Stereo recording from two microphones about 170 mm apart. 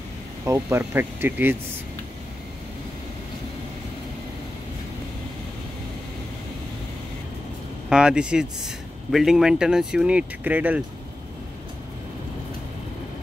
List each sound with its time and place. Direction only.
0.5 s speech: 15° right (ahead or behind)
7.9 s speech: 5° right (ahead or behind)